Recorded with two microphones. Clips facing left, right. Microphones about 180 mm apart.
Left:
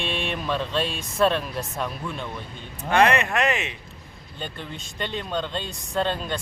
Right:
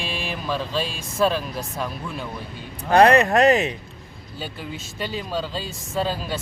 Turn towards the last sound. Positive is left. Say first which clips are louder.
# even
turn(degrees=-5)  # may be behind; listen again after turning